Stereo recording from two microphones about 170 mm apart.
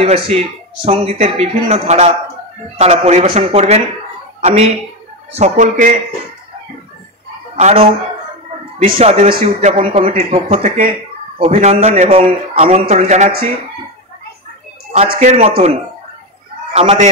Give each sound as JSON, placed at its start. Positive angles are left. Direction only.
{"t": 0.0, "sound": "a man's voice", "side_deg": -40}
{"t": 7.5, "sound": "speech", "side_deg": -40}
{"t": 8.7, "sound": "a man's voice", "side_deg": -55}
{"t": 14.9, "sound": "a man's voice", "side_deg": -35}
{"t": 16.7, "sound": "a man's voice", "side_deg": -35}